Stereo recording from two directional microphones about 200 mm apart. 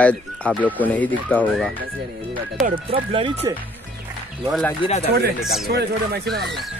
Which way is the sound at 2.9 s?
25° right (ahead or behind).